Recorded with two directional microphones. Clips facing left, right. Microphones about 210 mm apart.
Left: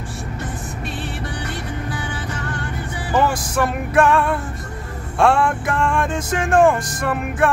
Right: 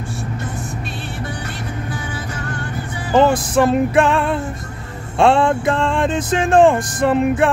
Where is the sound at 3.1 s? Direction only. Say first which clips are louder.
Right 5 dB; 25° right (ahead or behind).